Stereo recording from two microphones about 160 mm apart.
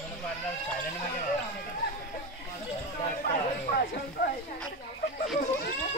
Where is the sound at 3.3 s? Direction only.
80° left.